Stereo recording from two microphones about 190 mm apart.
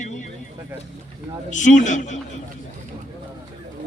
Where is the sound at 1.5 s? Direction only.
40° left (ahead or behind).